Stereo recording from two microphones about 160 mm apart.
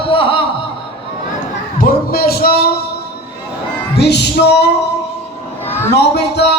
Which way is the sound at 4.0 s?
90° left.